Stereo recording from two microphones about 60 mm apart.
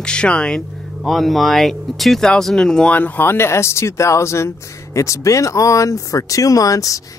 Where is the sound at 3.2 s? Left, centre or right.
Left.